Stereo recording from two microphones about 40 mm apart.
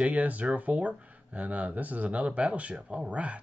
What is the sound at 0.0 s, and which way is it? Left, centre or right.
Speech, right.